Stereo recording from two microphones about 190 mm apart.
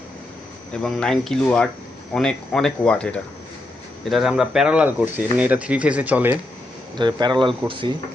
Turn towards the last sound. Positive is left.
turn(degrees=-25)  # may be behind; listen again after turning